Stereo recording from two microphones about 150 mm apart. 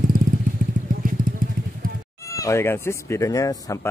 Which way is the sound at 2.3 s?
20° left (ahead or behind).